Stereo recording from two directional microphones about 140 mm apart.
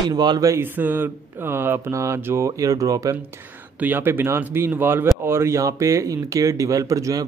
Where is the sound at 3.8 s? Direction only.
15° right (ahead or behind).